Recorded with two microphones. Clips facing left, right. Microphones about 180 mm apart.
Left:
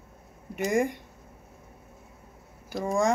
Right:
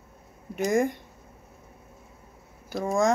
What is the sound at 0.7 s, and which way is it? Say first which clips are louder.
Speech: right 1 dB; 15° left (ahead or behind).